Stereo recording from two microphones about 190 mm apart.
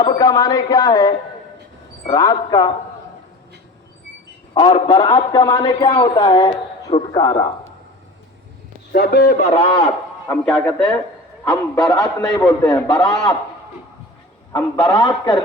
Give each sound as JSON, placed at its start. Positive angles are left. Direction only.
{"t": 0.0, "sound": "a man's voice", "side_deg": 20}
{"t": 4.5, "sound": "a man's voice", "side_deg": 25}
{"t": 8.9, "sound": "a man's voice", "side_deg": 55}
{"t": 9.4, "sound": "a man's voice", "side_deg": 30}
{"t": 10.2, "sound": "a man's voice", "side_deg": 0}
{"t": 11.4, "sound": "a man's voice", "side_deg": 15}
{"t": 14.5, "sound": "a man's voice", "side_deg": 15}